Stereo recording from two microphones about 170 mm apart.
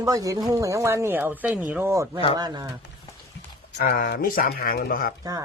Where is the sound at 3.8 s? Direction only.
55° left (ahead or behind).